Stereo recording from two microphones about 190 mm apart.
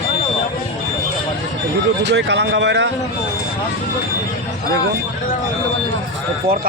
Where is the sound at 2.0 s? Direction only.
65° right (ahead or behind).